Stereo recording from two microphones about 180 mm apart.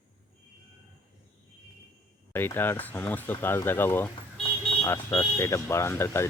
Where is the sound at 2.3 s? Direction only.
10° left (ahead or behind).